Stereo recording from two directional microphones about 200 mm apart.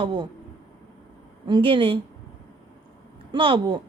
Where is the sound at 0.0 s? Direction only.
25° right (ahead or behind).